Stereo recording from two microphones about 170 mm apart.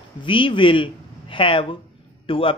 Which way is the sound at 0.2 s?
30° left (ahead or behind).